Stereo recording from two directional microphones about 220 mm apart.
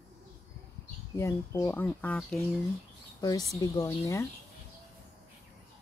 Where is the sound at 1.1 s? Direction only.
10° left (ahead or behind).